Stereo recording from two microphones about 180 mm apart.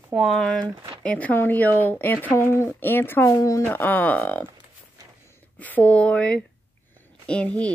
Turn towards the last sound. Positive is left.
turn(degrees=5)  # may be behind; listen again after turning